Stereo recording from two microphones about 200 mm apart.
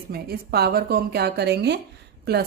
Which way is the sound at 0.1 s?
50° right (ahead or behind).